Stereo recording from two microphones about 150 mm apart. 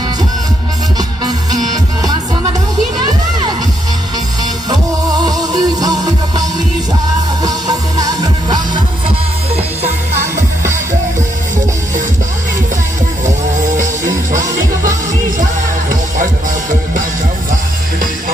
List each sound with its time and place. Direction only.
4.6 s music: 25° right (ahead or behind)
7.4 s music: 25° right (ahead or behind)